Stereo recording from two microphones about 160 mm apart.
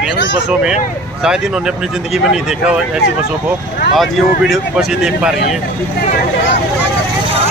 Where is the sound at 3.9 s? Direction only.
Centre (ahead or behind).